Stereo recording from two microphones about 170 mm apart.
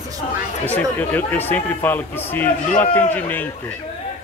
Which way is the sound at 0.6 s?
10° left (ahead or behind).